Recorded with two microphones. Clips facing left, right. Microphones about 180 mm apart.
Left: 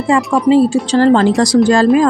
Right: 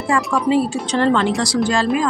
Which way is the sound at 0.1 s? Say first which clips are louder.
Left 4 dB; 20° left (ahead or behind).